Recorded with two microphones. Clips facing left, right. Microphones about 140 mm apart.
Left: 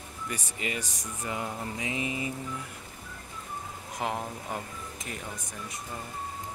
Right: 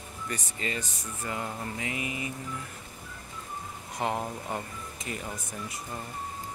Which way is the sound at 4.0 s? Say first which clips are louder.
Right 2 dB; centre (ahead or behind).